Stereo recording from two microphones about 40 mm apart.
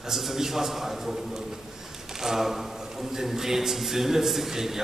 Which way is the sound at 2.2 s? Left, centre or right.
Centre.